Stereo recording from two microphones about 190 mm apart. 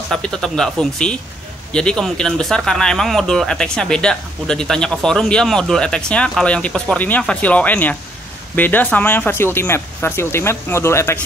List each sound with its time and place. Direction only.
0.1 s speech: 5° left (ahead or behind)